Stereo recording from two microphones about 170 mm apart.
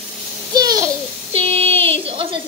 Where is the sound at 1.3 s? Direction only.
35° right (ahead or behind).